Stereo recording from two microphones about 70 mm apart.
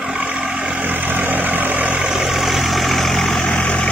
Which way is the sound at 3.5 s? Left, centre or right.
Left.